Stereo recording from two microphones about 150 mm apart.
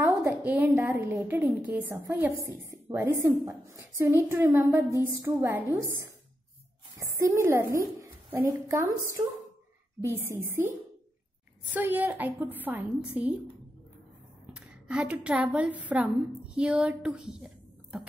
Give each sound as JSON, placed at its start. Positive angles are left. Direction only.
{"t": 0.2, "sound": "a woman's voice", "side_deg": -10}
{"t": 11.7, "sound": "a woman's voice", "side_deg": -10}
{"t": 14.5, "sound": "a woman's voice", "side_deg": -5}